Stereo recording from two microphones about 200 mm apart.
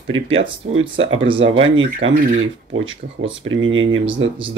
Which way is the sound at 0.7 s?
85° right.